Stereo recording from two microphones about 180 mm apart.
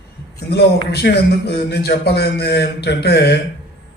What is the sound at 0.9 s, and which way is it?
A man's voice, 65° left (ahead or behind).